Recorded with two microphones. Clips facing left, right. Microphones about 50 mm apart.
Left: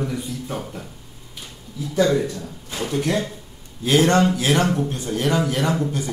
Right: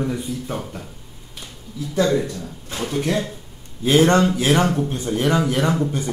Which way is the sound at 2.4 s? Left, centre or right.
Centre.